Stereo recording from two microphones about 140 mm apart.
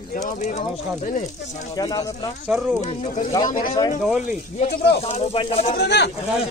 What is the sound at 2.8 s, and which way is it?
Speech, 50° left (ahead or behind).